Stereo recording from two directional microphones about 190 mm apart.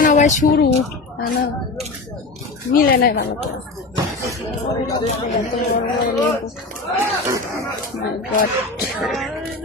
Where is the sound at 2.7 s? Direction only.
50° left (ahead or behind).